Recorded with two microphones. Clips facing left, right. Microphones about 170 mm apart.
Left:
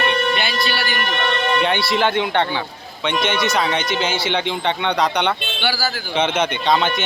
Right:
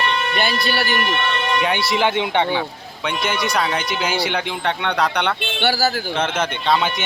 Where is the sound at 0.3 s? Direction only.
50° right (ahead or behind).